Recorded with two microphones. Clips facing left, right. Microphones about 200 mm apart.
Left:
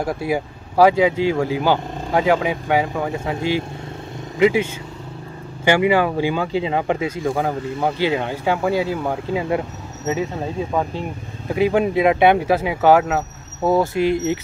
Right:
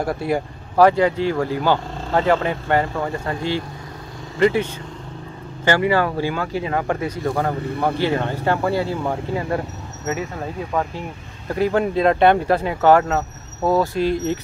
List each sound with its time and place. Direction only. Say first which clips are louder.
0.0 s speech: even; centre (ahead or behind)
5.7 s speech: left 2 dB; 15° left (ahead or behind)